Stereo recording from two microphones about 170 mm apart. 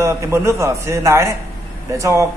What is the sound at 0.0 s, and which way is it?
A man's voice, 15° right (ahead or behind).